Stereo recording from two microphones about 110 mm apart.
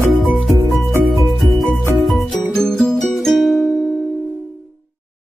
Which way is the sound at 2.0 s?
Centre (ahead or behind).